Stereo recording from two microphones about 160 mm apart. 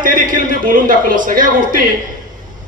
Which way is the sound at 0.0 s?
60° right (ahead or behind).